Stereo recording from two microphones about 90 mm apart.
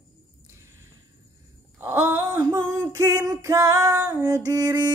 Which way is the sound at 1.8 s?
30° right (ahead or behind).